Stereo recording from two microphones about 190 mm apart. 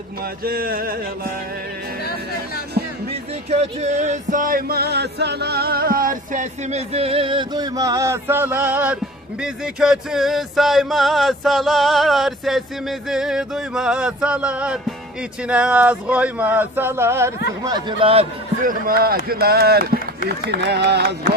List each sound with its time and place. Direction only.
0.2 s speech: 50° right (ahead or behind)
3.5 s music: 35° right (ahead or behind); by 9.0 s 10° right (ahead or behind)
9.4 s speech: 5° right (ahead or behind); by 18.3 s 30° right (ahead or behind)
18.6 s speech: 45° right (ahead or behind)